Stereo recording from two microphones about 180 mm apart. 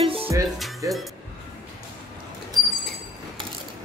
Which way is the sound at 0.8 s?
20° right (ahead or behind).